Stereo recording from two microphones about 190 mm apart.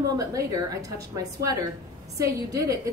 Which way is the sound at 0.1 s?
15° right (ahead or behind).